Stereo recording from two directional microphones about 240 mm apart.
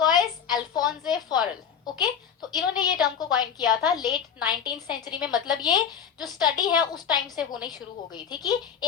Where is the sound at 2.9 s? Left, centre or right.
Centre.